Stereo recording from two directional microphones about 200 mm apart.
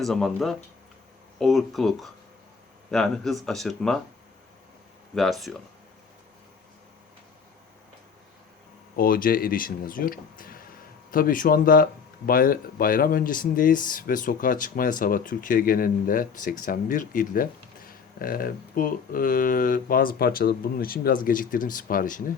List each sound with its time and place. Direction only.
0.0 s speech: centre (ahead or behind)
5.1 s speech: centre (ahead or behind)
9.0 s speech: 45° left (ahead or behind)